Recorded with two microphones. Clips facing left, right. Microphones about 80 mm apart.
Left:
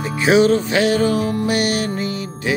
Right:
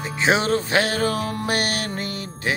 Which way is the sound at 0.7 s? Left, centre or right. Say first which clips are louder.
Left 5 dB; right.